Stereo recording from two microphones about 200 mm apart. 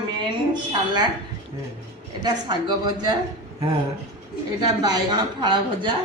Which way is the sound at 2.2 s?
20° right (ahead or behind).